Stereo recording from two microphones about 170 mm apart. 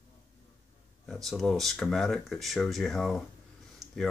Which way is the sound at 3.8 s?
20° right (ahead or behind).